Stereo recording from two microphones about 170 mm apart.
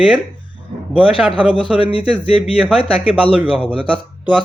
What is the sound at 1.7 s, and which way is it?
Speech, 35° left (ahead or behind).